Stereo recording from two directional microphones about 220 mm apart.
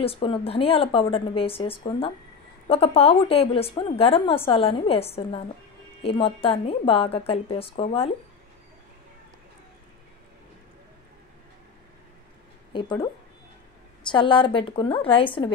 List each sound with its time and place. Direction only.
0.0 s speech: 25° left (ahead or behind)
12.7 s speech: 20° left (ahead or behind)
14.1 s speech: 20° left (ahead or behind)